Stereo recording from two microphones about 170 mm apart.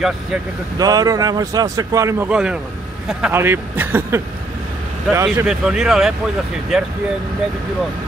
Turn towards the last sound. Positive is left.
turn(degrees=0)  # may be behind; listen again after turning